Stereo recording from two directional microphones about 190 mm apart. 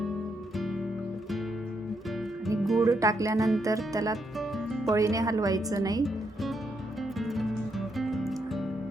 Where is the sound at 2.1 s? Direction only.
Centre (ahead or behind).